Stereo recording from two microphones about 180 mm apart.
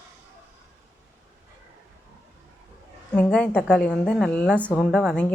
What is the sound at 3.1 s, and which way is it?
A woman's voice, 5° left (ahead or behind).